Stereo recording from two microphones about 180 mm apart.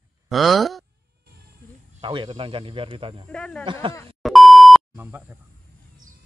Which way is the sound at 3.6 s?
25° right (ahead or behind).